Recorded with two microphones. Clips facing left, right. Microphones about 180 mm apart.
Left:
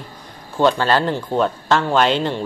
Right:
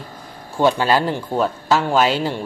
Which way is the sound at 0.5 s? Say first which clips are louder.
Even; 10° right (ahead or behind).